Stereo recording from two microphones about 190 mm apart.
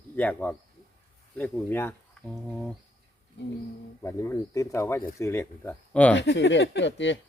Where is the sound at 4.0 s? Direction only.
15° left (ahead or behind).